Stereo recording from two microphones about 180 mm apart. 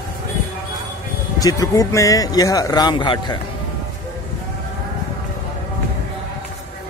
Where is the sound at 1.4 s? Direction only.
20° left (ahead or behind).